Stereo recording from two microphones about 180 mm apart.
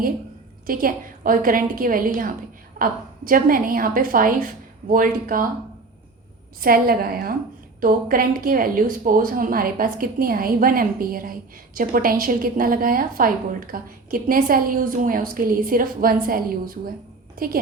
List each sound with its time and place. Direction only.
0.7 s a woman's voice: 50° right (ahead or behind)
6.6 s a woman's voice: 55° right (ahead or behind)